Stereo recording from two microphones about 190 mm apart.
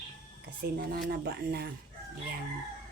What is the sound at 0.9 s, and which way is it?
Speech, 60° right (ahead or behind).